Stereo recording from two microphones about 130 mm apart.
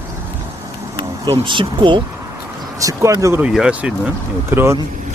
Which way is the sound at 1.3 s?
40° right (ahead or behind).